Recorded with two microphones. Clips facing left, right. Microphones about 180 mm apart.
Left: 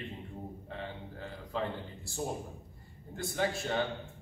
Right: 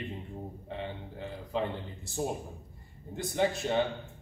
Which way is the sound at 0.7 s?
20° right (ahead or behind).